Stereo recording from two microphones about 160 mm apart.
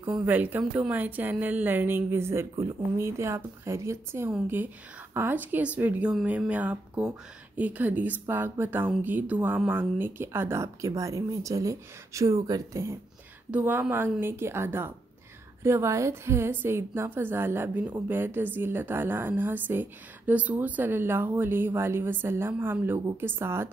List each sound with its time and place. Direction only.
0.2 s a woman's voice: 10° right (ahead or behind)
13.5 s a woman's voice: 10° right (ahead or behind)